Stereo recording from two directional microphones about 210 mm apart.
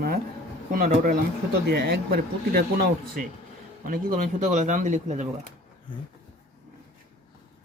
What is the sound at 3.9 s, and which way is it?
Speech, 40° right (ahead or behind).